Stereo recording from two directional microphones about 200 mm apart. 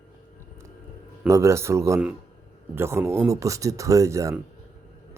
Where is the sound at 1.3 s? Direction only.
15° right (ahead or behind).